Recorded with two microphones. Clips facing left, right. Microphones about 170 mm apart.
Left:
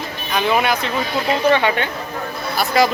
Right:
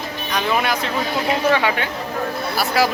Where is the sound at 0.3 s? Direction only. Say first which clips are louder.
Left 3 dB; 5° left (ahead or behind).